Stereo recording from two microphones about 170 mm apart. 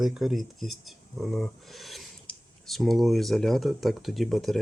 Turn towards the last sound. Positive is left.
turn(degrees=0)  # may be behind; listen again after turning